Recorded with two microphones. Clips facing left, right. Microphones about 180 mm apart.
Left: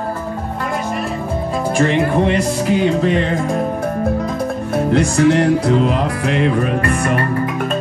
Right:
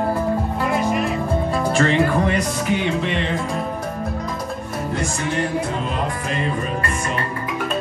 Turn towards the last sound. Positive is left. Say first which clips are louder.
# left 7 dB
turn(degrees=65)  # may be behind; listen again after turning